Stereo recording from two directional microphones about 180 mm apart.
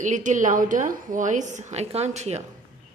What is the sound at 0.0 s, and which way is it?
A woman's voice, 45° right (ahead or behind).